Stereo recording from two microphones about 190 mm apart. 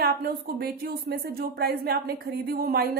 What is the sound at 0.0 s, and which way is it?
A woman's voice, 55° right (ahead or behind).